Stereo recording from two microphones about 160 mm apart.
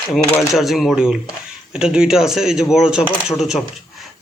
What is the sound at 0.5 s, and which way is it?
A man's voice, centre (ahead or behind).